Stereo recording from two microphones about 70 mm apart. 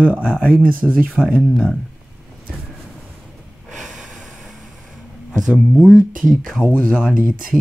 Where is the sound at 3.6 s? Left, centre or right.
Centre.